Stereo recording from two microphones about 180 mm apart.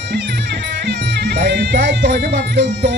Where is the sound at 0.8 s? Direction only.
65° right (ahead or behind).